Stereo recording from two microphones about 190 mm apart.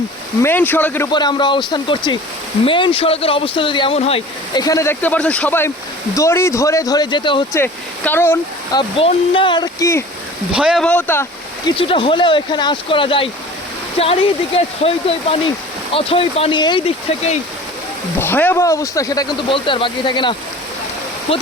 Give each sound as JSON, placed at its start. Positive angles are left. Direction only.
{"t": 0.4, "sound": "speech", "side_deg": 10}
{"t": 1.1, "sound": "speech", "side_deg": 25}
{"t": 4.6, "sound": "speech", "side_deg": 15}
{"t": 7.5, "sound": "speech", "side_deg": 10}
{"t": 9.0, "sound": "speech", "side_deg": 30}
{"t": 10.5, "sound": "speech", "side_deg": -5}
{"t": 10.8, "sound": "speech", "side_deg": 10}
{"t": 11.8, "sound": "speech", "side_deg": 30}
{"t": 18.2, "sound": "speech", "side_deg": 10}